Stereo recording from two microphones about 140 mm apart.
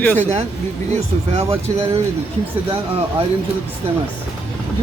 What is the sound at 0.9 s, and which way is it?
Speech, 50° right (ahead or behind).